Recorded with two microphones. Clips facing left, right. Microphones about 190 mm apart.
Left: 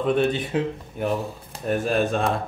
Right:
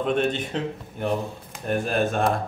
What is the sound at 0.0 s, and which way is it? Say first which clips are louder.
Speech: left 2 dB; 5° left (ahead or behind).